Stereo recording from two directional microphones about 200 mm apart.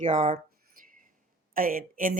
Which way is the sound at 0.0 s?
35° right (ahead or behind).